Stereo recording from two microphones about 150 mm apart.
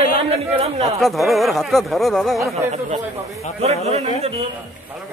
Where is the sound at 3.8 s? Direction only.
45° right (ahead or behind).